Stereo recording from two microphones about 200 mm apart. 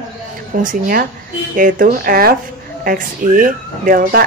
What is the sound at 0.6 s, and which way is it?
Speech, 45° right (ahead or behind).